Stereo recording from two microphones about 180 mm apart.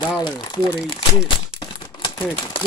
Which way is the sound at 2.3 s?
25° left (ahead or behind).